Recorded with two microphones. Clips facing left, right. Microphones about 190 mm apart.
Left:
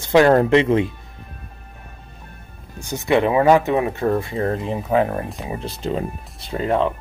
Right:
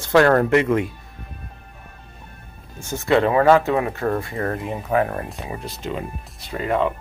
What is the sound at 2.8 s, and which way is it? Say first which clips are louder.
Speech: even; 15° left (ahead or behind).